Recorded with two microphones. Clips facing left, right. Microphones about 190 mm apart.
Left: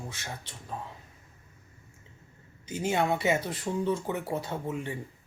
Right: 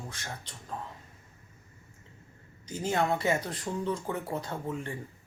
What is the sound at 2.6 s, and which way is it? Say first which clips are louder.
Speech: left 3 dB; 25° left (ahead or behind).